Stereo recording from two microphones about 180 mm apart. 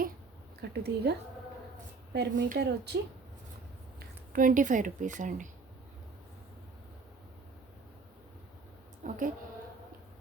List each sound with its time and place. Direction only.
0.6 s a woman's voice: 65° right (ahead or behind)
2.1 s speech: 65° right (ahead or behind)
4.3 s a woman's voice: 50° right (ahead or behind)
9.0 s a woman's voice: 45° right (ahead or behind)